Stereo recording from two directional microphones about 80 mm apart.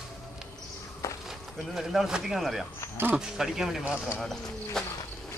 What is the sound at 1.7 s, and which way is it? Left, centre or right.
Speech, centre.